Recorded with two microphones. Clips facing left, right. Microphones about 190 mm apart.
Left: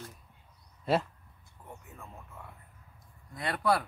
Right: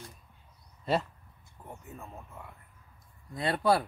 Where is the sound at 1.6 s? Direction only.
30° right (ahead or behind).